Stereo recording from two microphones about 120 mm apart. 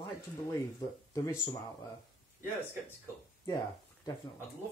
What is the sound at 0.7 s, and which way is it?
Speech, 30° left (ahead or behind).